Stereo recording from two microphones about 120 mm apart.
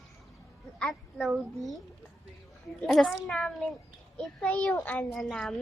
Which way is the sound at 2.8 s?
5° left (ahead or behind).